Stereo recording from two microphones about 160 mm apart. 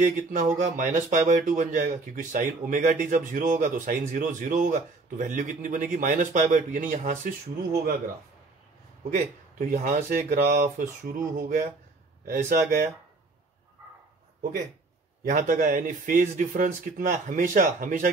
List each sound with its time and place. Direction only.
0.6 s speech: 55° right (ahead or behind)
9.1 s speech: 55° right (ahead or behind)
15.2 s speech: 55° right (ahead or behind)